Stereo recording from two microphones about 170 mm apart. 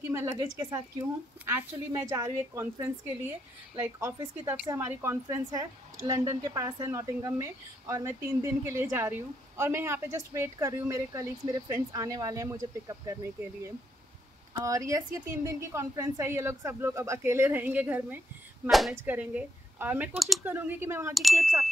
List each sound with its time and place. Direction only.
0.1 s speech: 15° right (ahead or behind)
14.5 s speech: 20° right (ahead or behind)
18.7 s ding: centre (ahead or behind)
18.9 s speech: 10° right (ahead or behind)
21.1 s ding: centre (ahead or behind)